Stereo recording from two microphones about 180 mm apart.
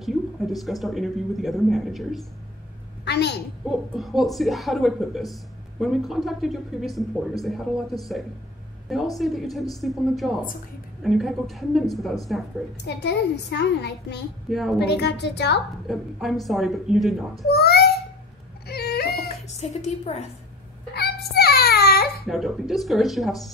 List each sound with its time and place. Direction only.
0.0 s a woman's voice: centre (ahead or behind)
3.1 s a child's voice: 70° left (ahead or behind)
3.6 s a woman's voice: centre (ahead or behind)
8.8 s a woman's voice: centre (ahead or behind)
12.8 s a child's voice: 70° left (ahead or behind)
14.5 s a woman's voice: centre (ahead or behind)
14.8 s a child's voice: 70° left (ahead or behind)
15.9 s a woman's voice: centre (ahead or behind)
17.5 s a child's voice: 60° left (ahead or behind)
18.7 s a sound: 60° left (ahead or behind)
19.5 s a woman's voice: 35° left (ahead or behind)
20.9 s a sound: 65° left (ahead or behind)
22.2 s a woman's voice: centre (ahead or behind)